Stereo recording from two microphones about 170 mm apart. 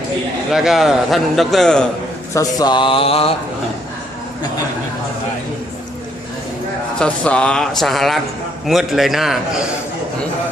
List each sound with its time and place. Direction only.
0.5 s a man's voice: centre (ahead or behind)
2.3 s mantra: 20° left (ahead or behind)
7.0 s a man's voice: 5° left (ahead or behind)